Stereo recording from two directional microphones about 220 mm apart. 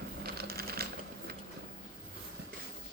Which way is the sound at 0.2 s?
45° right (ahead or behind).